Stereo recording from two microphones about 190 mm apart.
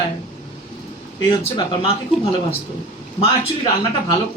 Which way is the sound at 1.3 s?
25° left (ahead or behind).